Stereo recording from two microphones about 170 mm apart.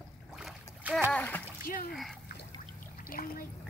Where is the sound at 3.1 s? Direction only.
60° left (ahead or behind).